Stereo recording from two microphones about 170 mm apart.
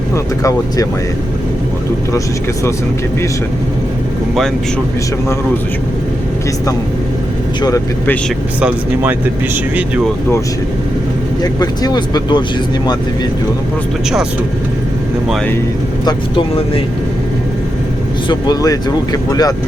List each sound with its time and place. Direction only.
8.6 s speech: 10° right (ahead or behind)
11.6 s speech: 25° left (ahead or behind)
16.0 s speech: 30° left (ahead or behind)
18.3 s speech: 25° left (ahead or behind)